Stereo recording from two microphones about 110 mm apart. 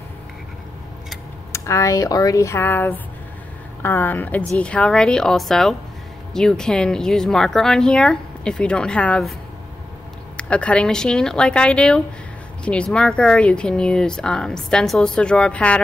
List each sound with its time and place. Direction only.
1.5 s speech: 25° left (ahead or behind); by 9.2 s 10° left (ahead or behind)
10.3 s speech: 10° left (ahead or behind)